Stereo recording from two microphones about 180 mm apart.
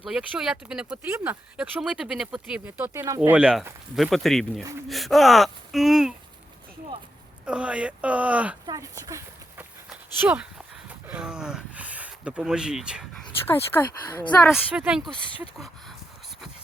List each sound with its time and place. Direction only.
0.0 s speech: centre (ahead or behind)
7.4 s speech: 5° right (ahead or behind)
8.6 s speech: 20° right (ahead or behind); by 13.1 s 5° right (ahead or behind)
13.5 s speech: 10° left (ahead or behind)
14.5 s speech: 5° right (ahead or behind)